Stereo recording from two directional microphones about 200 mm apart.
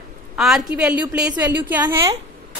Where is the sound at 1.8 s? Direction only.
20° right (ahead or behind).